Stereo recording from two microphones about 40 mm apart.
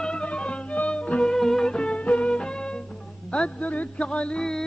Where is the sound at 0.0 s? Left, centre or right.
Left.